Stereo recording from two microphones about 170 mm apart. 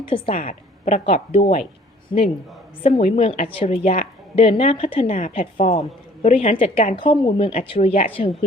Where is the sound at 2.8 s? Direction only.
40° left (ahead or behind).